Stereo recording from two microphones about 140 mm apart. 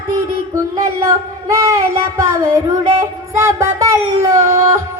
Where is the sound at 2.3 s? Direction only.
20° right (ahead or behind).